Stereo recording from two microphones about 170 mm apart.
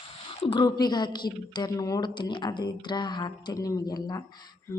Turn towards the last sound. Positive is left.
turn(degrees=15)  # may be behind; listen again after turning